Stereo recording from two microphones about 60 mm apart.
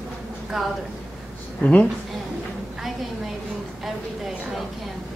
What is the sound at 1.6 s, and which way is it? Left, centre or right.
Speech, left.